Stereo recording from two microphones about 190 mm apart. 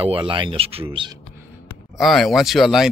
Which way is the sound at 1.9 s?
Centre (ahead or behind).